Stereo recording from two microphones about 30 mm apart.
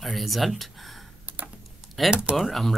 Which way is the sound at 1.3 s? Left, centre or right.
Right.